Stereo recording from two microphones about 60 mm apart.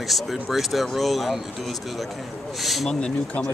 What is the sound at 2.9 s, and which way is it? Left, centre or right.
Speech, centre.